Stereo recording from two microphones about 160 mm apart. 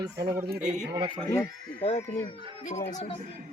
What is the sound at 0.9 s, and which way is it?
Speech, 35° right (ahead or behind).